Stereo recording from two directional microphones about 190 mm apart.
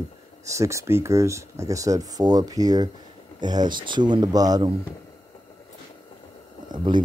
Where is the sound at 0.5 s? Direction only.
15° right (ahead or behind).